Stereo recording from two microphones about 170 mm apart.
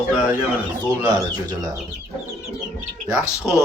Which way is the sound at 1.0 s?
15° right (ahead or behind).